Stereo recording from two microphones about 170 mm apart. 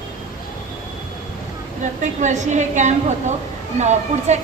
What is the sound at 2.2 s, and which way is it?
A woman's voice, 45° right (ahead or behind).